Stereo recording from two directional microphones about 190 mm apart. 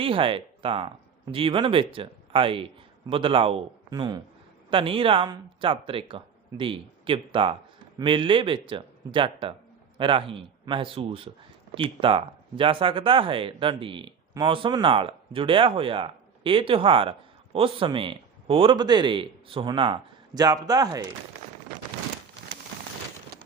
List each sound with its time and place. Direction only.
0.0 s speech: 30° right (ahead or behind)